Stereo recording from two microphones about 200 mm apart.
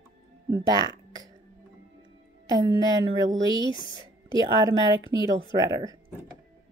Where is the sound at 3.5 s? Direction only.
20° right (ahead or behind).